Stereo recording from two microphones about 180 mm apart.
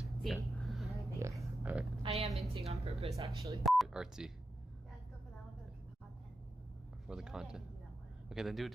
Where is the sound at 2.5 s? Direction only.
35° right (ahead or behind).